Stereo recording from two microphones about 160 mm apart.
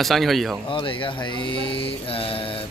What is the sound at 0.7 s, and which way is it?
Speech, 30° left (ahead or behind).